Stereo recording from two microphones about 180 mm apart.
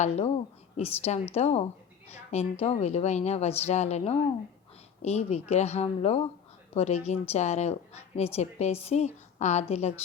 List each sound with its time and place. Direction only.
0.0 s a woman's voice: 35° left (ahead or behind)